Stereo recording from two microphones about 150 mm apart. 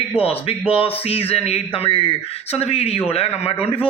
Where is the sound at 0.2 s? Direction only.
40° left (ahead or behind).